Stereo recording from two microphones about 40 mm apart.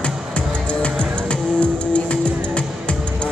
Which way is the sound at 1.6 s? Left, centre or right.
Left.